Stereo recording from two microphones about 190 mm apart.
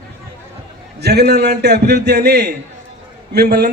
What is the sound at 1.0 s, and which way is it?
A man's voice, 60° right (ahead or behind).